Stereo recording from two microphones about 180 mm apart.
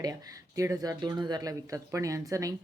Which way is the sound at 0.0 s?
20° right (ahead or behind).